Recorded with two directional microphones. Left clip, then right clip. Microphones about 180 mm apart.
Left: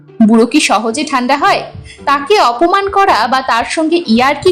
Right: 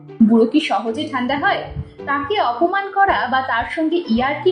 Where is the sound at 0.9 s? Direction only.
35° left (ahead or behind).